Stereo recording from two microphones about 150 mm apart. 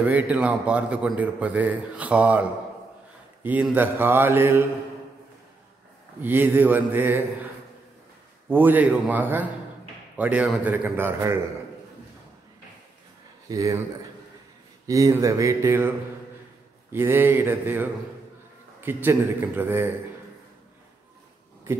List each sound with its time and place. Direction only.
0.0 s a man's voice: 10° right (ahead or behind)
3.4 s a man's voice: 10° right (ahead or behind)
6.2 s a man's voice: 15° right (ahead or behind)
8.5 s a man's voice: 15° right (ahead or behind)
13.5 s speech: 20° right (ahead or behind)
14.9 s speech: 20° right (ahead or behind)
16.9 s a man's voice: 15° right (ahead or behind)